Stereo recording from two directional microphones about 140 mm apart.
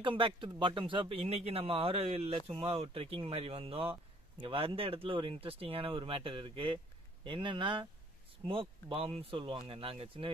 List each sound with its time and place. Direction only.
0.0 s speech: 40° right (ahead or behind)